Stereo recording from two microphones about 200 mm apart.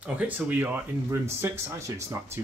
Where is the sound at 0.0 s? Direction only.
10° right (ahead or behind).